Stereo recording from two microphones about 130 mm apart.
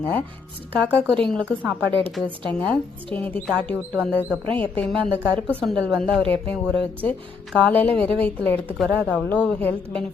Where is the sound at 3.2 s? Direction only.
10° left (ahead or behind).